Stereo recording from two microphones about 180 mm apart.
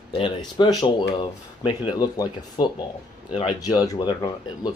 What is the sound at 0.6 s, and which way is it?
Speech, 25° left (ahead or behind).